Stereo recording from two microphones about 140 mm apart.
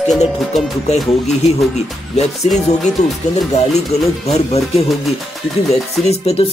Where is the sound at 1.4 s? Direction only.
50° left (ahead or behind).